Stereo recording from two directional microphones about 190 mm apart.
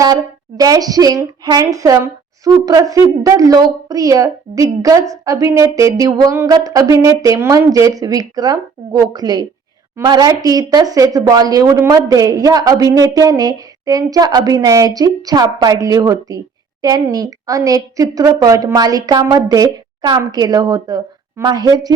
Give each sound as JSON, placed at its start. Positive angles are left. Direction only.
{"t": 0.0, "sound": "a woman's voice", "side_deg": -20}